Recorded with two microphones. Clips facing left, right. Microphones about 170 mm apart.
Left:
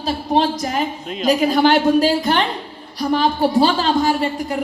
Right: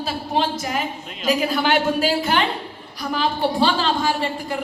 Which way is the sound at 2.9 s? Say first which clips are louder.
Left 6 dB; 35° left (ahead or behind).